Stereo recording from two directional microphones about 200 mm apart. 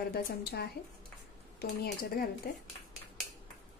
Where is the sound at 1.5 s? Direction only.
50° left (ahead or behind).